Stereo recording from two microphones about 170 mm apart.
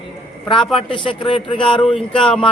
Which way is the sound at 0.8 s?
30° left (ahead or behind).